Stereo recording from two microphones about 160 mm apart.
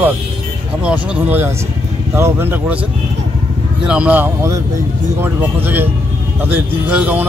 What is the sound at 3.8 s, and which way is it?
Speech, 5° right (ahead or behind).